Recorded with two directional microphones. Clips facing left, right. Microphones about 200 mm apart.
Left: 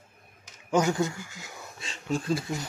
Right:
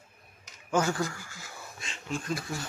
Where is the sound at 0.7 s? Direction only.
20° left (ahead or behind).